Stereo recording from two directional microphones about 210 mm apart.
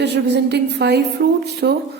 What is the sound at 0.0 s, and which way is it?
A woman's voice, 55° right (ahead or behind).